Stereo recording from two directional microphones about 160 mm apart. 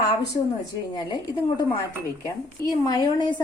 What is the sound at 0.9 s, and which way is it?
Speech, 25° left (ahead or behind).